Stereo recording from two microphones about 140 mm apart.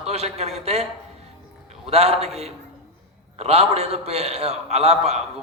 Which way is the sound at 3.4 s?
45° right (ahead or behind).